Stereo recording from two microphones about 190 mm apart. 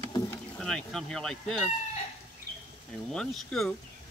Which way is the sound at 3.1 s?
5° left (ahead or behind).